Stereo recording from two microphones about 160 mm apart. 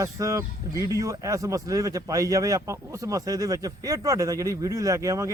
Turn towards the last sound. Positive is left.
turn(degrees=-20)  # may be behind; listen again after turning